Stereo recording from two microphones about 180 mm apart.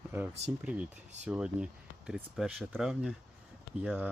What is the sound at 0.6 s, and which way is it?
Speech, 5° right (ahead or behind).